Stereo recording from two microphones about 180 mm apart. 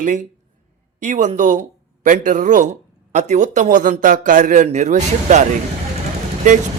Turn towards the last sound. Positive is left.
turn(degrees=-45)  # may be behind; listen again after turning